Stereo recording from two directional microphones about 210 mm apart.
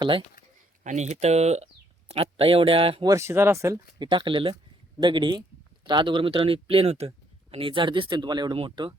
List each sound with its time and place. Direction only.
0.0 s speech: 25° right (ahead or behind)